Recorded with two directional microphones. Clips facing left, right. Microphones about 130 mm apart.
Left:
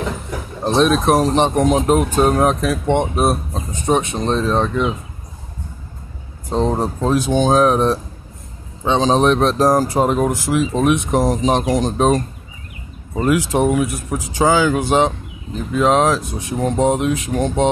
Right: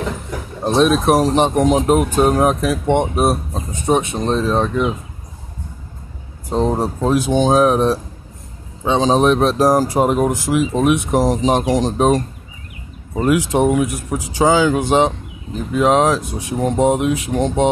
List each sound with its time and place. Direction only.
0.7 s speech: 10° right (ahead or behind)
6.5 s speech: 10° right (ahead or behind)
13.1 s speech: 15° right (ahead or behind)